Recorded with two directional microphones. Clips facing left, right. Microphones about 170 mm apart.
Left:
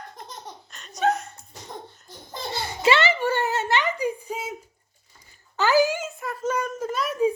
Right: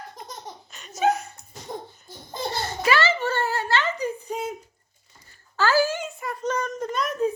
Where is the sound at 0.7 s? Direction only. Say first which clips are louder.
Right 1 dB; centre (ahead or behind).